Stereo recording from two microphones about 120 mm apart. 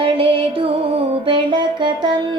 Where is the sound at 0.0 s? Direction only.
50° right (ahead or behind).